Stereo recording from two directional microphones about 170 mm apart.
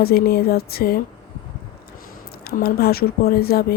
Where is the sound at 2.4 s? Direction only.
65° left (ahead or behind).